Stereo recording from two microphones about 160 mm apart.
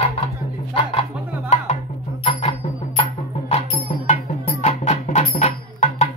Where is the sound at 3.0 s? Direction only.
40° left (ahead or behind).